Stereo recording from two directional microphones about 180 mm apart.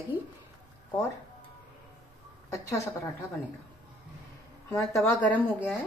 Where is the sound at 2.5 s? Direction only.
15° left (ahead or behind).